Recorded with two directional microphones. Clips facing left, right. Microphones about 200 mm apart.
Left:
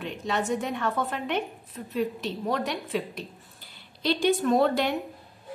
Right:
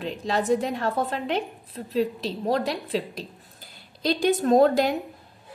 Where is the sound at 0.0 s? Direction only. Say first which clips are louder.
Right 3 dB; 35° right (ahead or behind).